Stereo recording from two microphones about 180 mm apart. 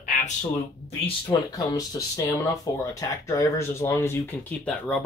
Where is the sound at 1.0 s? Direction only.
25° left (ahead or behind).